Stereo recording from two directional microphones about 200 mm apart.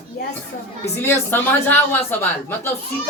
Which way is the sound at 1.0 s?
10° left (ahead or behind).